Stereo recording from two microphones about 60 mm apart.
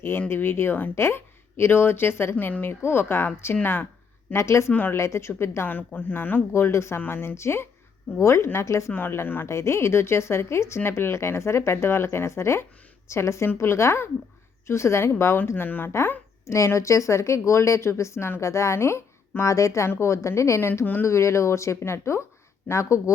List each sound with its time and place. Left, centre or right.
0.3 s speech: left
2.3 s speech: left
4.4 s speech: left
4.7 s speech: left
4.9 s speech: left
5.6 s speech: left
6.5 s speech: left
8.9 s speech: left
9.5 s speech: left
15.5 s speech: left
16.5 s speech: left
19.4 s speech: left